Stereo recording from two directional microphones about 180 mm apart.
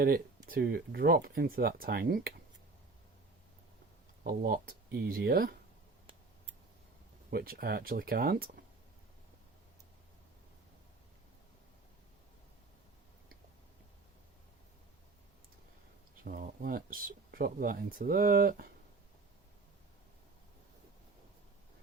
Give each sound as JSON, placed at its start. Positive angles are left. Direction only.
{"t": 0.4, "sound": "speech", "side_deg": -55}
{"t": 4.2, "sound": "speech", "side_deg": -50}
{"t": 7.3, "sound": "speech", "side_deg": -60}
{"t": 16.2, "sound": "speech", "side_deg": -50}